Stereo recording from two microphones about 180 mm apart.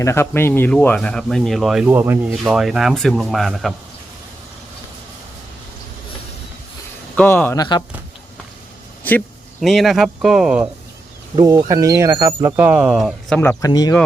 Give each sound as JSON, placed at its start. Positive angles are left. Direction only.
{"t": 0.0, "sound": "speech", "side_deg": 15}
{"t": 7.2, "sound": "speech", "side_deg": 10}
{"t": 7.6, "sound": "speech", "side_deg": 20}
{"t": 9.0, "sound": "speech", "side_deg": 5}
{"t": 11.3, "sound": "speech", "side_deg": -20}
{"t": 13.3, "sound": "speech", "side_deg": 10}